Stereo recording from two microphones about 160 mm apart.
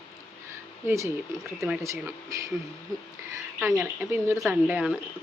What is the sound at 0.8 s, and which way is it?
Speech, 20° right (ahead or behind).